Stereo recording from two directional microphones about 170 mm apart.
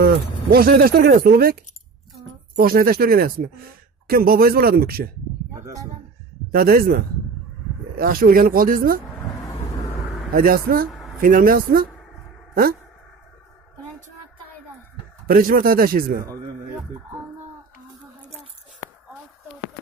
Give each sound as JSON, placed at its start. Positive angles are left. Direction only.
{"t": 0.0, "sound": "speech", "side_deg": -65}
{"t": 6.5, "sound": "speech", "side_deg": -60}
{"t": 10.3, "sound": "speech", "side_deg": -60}
{"t": 10.9, "sound": "a sound", "side_deg": 0}
{"t": 11.1, "sound": "speech", "side_deg": -55}
{"t": 15.2, "sound": "speech", "side_deg": -60}